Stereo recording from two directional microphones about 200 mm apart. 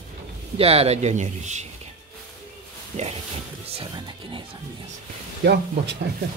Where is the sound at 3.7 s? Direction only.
25° right (ahead or behind).